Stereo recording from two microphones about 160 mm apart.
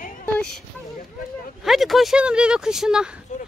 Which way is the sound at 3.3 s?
50° left (ahead or behind).